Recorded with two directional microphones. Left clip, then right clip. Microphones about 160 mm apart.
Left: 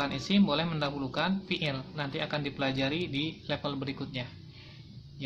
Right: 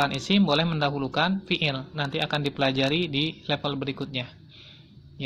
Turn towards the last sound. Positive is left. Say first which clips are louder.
# right 6 dB
turn(degrees=-35)  # may be behind; listen again after turning